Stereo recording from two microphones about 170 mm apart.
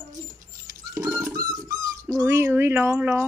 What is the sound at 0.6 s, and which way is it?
Rodents, 20° right (ahead or behind).